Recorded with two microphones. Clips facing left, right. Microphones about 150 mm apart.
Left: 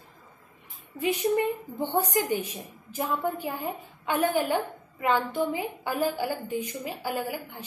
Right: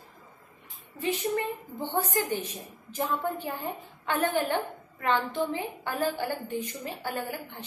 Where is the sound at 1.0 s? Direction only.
15° left (ahead or behind).